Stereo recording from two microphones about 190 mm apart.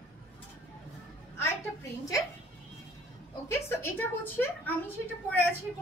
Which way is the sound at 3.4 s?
10° left (ahead or behind).